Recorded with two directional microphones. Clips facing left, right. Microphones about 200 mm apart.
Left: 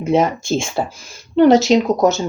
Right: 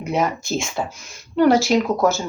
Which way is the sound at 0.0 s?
25° left (ahead or behind).